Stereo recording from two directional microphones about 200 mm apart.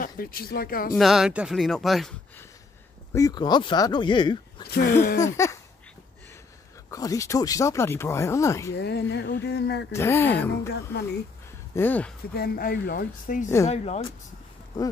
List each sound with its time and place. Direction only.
0.0 s speech: 45° left (ahead or behind)
0.9 s speech: centre (ahead or behind)
3.1 s speech: 15° left (ahead or behind)
4.6 s speech: 50° left (ahead or behind)
5.2 s speech: 15° left (ahead or behind)
6.9 s speech: 15° left (ahead or behind)
8.7 s a sound: 55° left (ahead or behind)
9.9 s speech: 15° left (ahead or behind)
11.7 s speech: 10° left (ahead or behind)
12.4 s speech: 50° left (ahead or behind)
13.7 s speech: 30° left (ahead or behind)
14.7 s speech: 20° left (ahead or behind)